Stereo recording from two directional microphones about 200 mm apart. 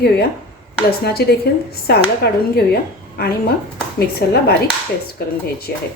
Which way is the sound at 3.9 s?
50° left (ahead or behind).